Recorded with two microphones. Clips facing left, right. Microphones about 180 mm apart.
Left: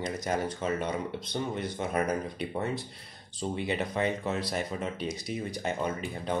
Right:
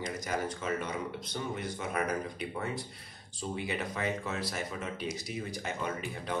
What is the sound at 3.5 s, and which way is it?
Speech, 25° left (ahead or behind).